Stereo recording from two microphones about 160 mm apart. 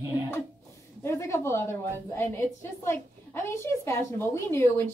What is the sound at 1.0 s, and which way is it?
A woman's voice, 15° left (ahead or behind).